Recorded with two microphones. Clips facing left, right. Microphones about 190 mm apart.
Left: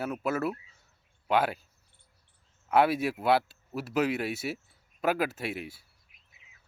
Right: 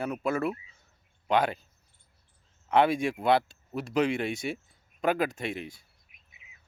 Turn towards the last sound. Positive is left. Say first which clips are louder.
# right 1 dB
turn(degrees=5)  # may be behind; listen again after turning